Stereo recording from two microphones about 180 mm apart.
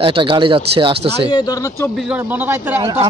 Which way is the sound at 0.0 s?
30° right (ahead or behind).